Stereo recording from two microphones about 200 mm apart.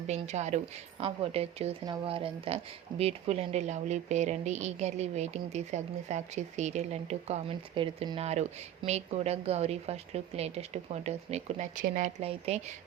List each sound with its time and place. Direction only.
0.1 s a woman's voice: 35° right (ahead or behind)